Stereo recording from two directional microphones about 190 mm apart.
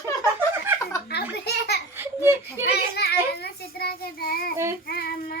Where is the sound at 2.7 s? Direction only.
60° left (ahead or behind).